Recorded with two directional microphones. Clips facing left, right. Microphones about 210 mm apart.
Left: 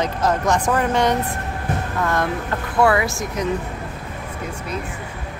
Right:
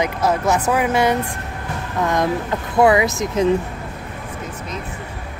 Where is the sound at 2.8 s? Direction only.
20° right (ahead or behind).